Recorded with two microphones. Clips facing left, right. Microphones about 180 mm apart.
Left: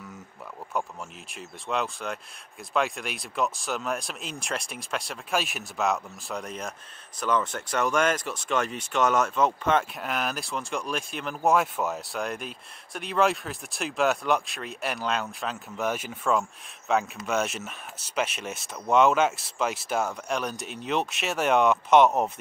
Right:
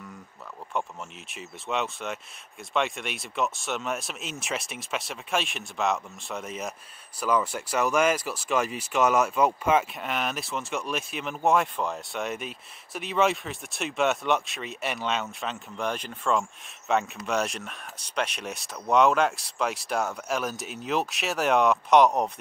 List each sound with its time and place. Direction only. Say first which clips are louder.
1.3 s speech: even; centre (ahead or behind)